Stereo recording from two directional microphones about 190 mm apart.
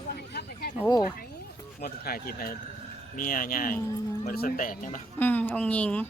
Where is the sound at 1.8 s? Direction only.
50° left (ahead or behind).